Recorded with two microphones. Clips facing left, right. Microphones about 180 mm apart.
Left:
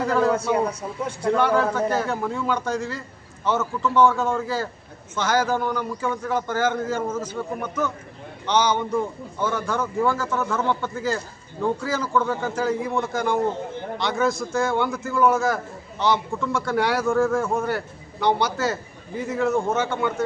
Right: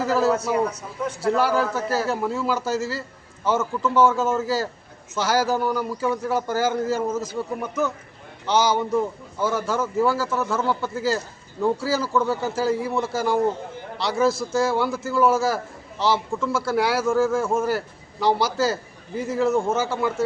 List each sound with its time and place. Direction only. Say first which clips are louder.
0.0 s speech: even; 5° right (ahead or behind)
0.7 s speech: left 1 dB; 30° left (ahead or behind)
1.7 s a man's voice: left 1 dB; 5° right (ahead or behind)